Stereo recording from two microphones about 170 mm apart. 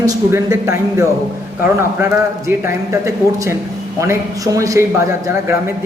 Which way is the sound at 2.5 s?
15° right (ahead or behind).